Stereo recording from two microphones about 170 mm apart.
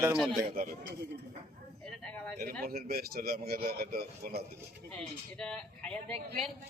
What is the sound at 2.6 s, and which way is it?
Speech, 60° right (ahead or behind).